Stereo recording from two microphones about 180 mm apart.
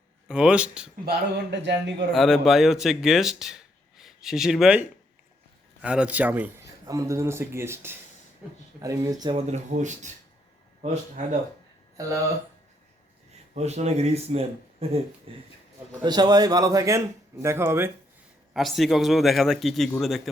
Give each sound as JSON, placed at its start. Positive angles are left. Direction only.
{"t": 0.3, "sound": "a man's voice", "side_deg": -5}
{"t": 1.0, "sound": "a man's voice", "side_deg": -65}
{"t": 2.1, "sound": "speech", "side_deg": 0}
{"t": 9.5, "sound": "speech", "side_deg": -40}
{"t": 11.9, "sound": "speech", "side_deg": -15}
{"t": 13.5, "sound": "speech", "side_deg": -40}
{"t": 18.5, "sound": "a man's voice", "side_deg": 0}